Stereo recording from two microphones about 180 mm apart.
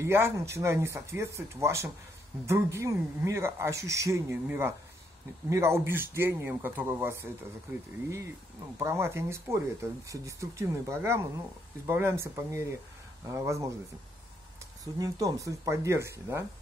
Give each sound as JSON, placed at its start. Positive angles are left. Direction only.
{"t": 0.0, "sound": "speech", "side_deg": -15}
{"t": 8.7, "sound": "speech", "side_deg": -15}
{"t": 15.0, "sound": "speech", "side_deg": -20}